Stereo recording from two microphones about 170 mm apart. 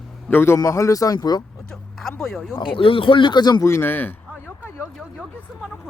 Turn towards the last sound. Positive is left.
turn(degrees=10)  # may be behind; listen again after turning